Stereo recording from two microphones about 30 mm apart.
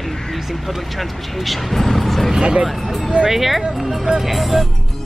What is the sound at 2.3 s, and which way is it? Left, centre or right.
Speech, right.